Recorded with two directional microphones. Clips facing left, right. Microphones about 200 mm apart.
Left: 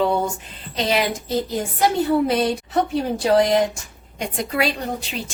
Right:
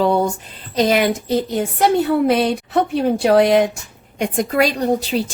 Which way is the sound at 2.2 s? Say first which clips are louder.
Right 4 dB; 60° right (ahead or behind).